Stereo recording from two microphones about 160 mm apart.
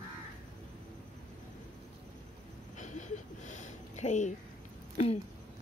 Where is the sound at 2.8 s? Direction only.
50° left (ahead or behind).